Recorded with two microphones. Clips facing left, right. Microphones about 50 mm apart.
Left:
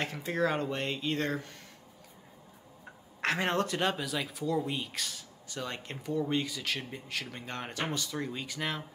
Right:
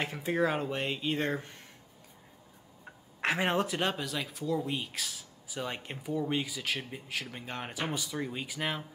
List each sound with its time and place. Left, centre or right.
0.0 s speech: centre
1.3 s speech: right
2.8 s speech: centre